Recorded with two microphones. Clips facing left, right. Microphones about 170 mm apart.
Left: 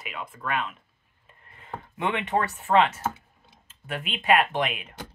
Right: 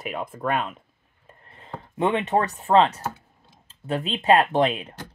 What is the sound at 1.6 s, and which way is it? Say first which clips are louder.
Speech: right 6 dB; 30° right (ahead or behind).